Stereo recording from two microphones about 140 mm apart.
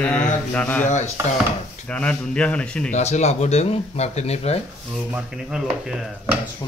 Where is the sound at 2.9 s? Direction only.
55° left (ahead or behind).